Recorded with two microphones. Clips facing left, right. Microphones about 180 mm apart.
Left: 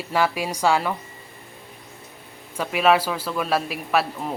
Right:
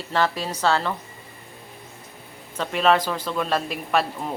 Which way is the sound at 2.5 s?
10° left (ahead or behind).